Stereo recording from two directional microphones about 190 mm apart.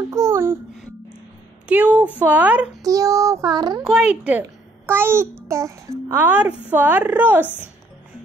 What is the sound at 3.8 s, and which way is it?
A child's voice, 5° right (ahead or behind).